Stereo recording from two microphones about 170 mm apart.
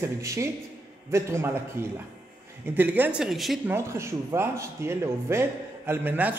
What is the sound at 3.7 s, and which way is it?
Speech, 15° right (ahead or behind).